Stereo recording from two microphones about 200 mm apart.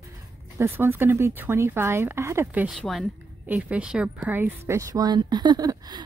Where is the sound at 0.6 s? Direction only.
10° right (ahead or behind).